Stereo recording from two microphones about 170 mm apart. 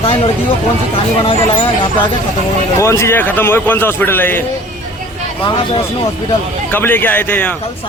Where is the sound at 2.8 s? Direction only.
15° left (ahead or behind).